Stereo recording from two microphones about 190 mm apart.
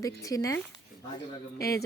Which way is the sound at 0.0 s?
20° left (ahead or behind).